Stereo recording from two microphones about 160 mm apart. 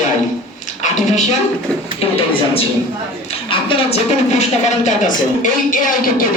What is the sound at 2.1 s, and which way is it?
A man's voice, 35° left (ahead or behind).